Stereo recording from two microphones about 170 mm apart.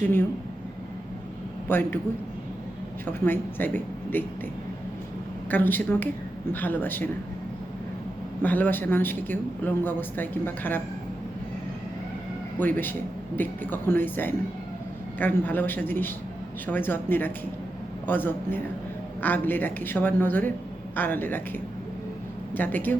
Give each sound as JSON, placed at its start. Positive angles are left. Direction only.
{"t": 1.6, "sound": "a man's voice", "side_deg": 10}
{"t": 3.1, "sound": "a man's voice", "side_deg": 10}
{"t": 5.5, "sound": "a man's voice", "side_deg": 10}
{"t": 8.4, "sound": "a man's voice", "side_deg": 10}
{"t": 12.5, "sound": "a man's voice", "side_deg": 10}